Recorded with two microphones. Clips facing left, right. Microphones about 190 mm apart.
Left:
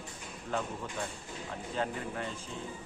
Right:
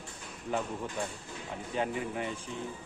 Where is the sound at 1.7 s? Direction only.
15° right (ahead or behind).